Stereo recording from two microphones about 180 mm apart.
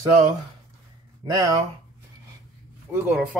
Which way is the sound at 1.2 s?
25° right (ahead or behind).